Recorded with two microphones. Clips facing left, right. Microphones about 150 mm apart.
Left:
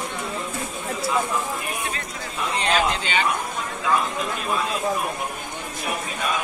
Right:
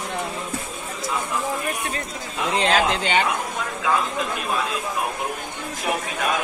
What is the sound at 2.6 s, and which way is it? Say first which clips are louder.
Speech: right 2 dB; 65° right (ahead or behind).